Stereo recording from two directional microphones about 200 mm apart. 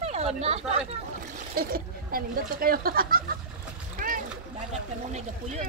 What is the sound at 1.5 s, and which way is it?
Speech, 45° right (ahead or behind).